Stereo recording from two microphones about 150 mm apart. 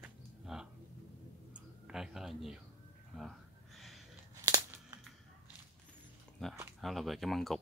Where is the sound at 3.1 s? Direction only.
Centre (ahead or behind).